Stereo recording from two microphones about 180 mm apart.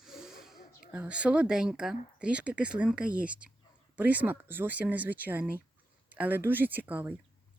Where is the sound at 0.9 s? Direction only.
5° right (ahead or behind).